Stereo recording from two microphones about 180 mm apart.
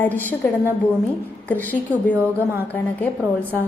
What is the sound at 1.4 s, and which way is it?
Speech, 10° left (ahead or behind).